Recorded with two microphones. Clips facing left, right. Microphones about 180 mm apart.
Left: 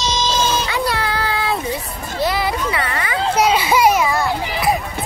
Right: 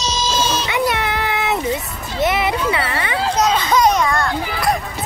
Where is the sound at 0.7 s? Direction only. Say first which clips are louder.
Right 1 dB; 20° right (ahead or behind).